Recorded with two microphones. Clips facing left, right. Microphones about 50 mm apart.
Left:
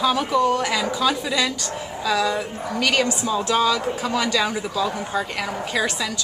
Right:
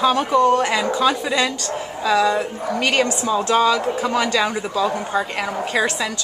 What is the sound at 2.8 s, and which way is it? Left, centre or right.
Speech, right.